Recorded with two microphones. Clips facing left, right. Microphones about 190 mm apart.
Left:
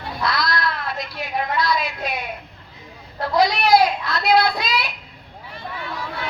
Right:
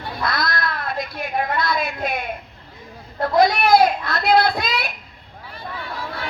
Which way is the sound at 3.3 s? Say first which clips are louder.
Right 1 dB; 50° right (ahead or behind).